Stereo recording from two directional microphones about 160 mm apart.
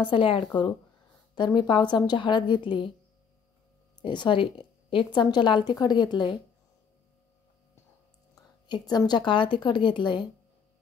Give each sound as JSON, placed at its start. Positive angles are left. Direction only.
{"t": 0.0, "sound": "a woman's voice", "side_deg": 35}
{"t": 4.0, "sound": "a woman's voice", "side_deg": 30}
{"t": 8.6, "sound": "a woman's voice", "side_deg": 25}